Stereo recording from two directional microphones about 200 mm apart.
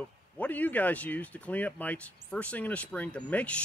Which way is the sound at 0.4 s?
10° left (ahead or behind).